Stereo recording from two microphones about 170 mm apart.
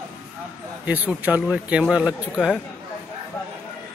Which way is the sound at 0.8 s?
10° right (ahead or behind).